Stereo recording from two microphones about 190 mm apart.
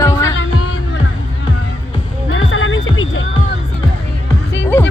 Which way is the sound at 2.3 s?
90° left.